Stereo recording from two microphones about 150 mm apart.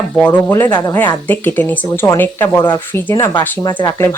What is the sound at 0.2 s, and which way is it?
Speech, 10° left (ahead or behind).